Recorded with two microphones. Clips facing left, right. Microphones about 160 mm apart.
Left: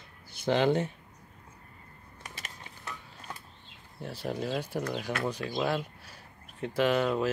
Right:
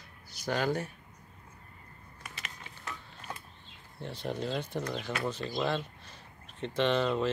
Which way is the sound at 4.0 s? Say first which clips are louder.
Left 1 dB; 5° left (ahead or behind).